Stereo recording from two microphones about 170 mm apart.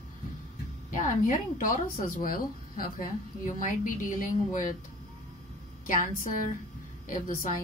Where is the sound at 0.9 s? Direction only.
50° left (ahead or behind).